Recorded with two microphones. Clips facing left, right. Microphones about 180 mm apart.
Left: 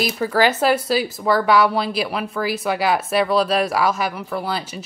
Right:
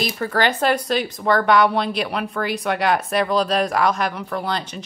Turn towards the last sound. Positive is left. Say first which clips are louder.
# even
turn(degrees=5)  # may be behind; listen again after turning